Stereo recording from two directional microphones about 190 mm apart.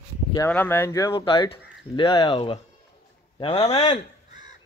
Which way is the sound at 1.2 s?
25° left (ahead or behind).